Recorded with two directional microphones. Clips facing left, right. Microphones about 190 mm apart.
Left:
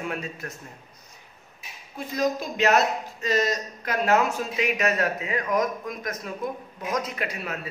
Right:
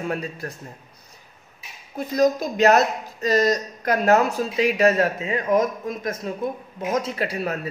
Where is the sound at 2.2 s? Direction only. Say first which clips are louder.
Right 6 dB; 40° right (ahead or behind).